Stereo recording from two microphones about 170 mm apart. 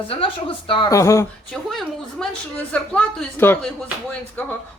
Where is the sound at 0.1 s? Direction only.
30° left (ahead or behind).